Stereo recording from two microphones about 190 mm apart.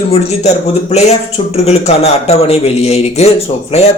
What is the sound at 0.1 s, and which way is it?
A man's voice, 35° left (ahead or behind).